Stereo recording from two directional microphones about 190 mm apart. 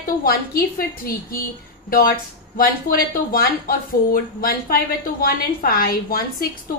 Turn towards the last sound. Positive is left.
turn(degrees=50)  # may be behind; listen again after turning